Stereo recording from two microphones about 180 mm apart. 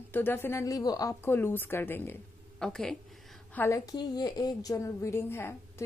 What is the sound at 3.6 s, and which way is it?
A woman's voice, 15° left (ahead or behind).